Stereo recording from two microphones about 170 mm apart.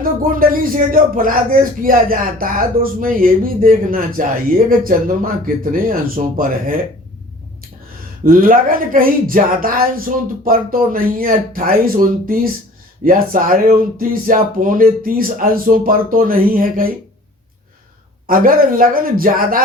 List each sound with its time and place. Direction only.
0.0 s speech: 55° right (ahead or behind)
8.2 s speech: 55° right (ahead or behind)
18.3 s speech: 55° right (ahead or behind)